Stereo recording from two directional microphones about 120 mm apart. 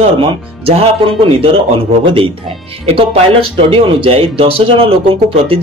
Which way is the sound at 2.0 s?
50° right (ahead or behind).